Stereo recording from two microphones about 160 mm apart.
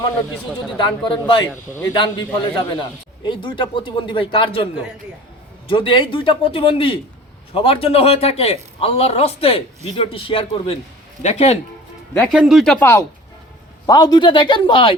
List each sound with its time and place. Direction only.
0.8 s a man's voice: 30° left (ahead or behind)
12.3 s speech: centre (ahead or behind)
12.8 s speech: 15° left (ahead or behind)
13.8 s speech: 25° left (ahead or behind)